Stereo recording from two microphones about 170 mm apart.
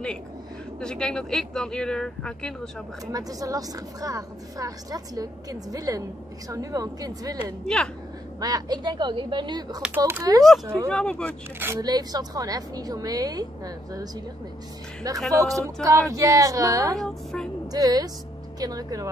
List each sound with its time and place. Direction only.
0.7 s speech: 5° left (ahead or behind)
3.1 s speech: 20° right (ahead or behind)
7.6 s speech: 5° left (ahead or behind)
8.4 s speech: 20° right (ahead or behind)
9.8 s speech: 10° right (ahead or behind)
10.9 s speech: 5° left (ahead or behind)
11.6 s speech: 20° right (ahead or behind)
15.3 s speech: 20° right (ahead or behind)
17.0 s speech: centre (ahead or behind)
17.6 s speech: 20° right (ahead or behind)